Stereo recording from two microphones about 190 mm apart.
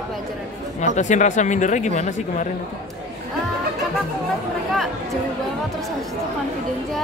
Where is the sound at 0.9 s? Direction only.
40° left (ahead or behind).